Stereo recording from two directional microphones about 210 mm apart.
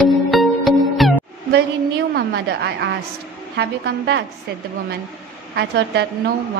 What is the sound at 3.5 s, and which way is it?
Speech, 55° right (ahead or behind).